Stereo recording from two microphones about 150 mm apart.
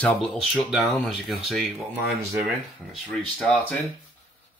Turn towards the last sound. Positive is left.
turn(degrees=10)  # may be behind; listen again after turning